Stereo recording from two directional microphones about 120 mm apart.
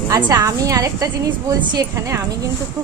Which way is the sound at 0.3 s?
30° right (ahead or behind).